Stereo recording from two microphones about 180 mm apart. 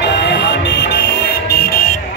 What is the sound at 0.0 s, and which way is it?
Music, 70° left (ahead or behind).